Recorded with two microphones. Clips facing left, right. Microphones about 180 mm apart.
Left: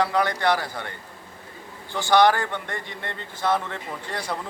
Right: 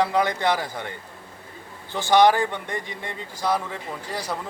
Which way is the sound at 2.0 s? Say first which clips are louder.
Right 1 dB; 20° right (ahead or behind).